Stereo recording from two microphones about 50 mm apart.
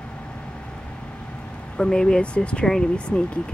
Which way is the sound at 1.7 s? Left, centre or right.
Centre.